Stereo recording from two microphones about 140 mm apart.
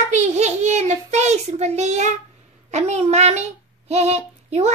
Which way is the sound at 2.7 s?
50° right (ahead or behind).